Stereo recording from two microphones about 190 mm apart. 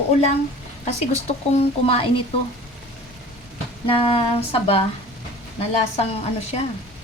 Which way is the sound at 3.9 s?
30° left (ahead or behind).